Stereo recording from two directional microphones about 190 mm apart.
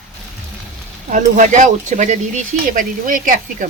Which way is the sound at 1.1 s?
40° right (ahead or behind).